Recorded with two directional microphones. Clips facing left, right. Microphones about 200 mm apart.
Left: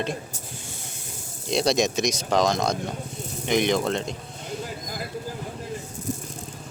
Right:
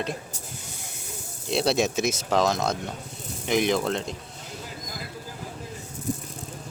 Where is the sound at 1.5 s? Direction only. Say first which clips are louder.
Left 1 dB; 5° right (ahead or behind).